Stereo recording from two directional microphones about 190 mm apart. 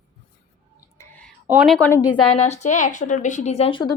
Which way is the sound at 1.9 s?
20° left (ahead or behind).